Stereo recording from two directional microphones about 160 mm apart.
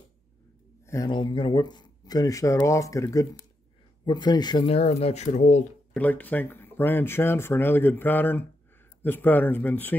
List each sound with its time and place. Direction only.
0.8 s speech: 25° left (ahead or behind); by 5.7 s 45° left (ahead or behind)
5.9 s speech: 10° left (ahead or behind)